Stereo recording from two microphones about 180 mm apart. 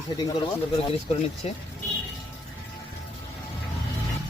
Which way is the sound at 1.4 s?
35° left (ahead or behind).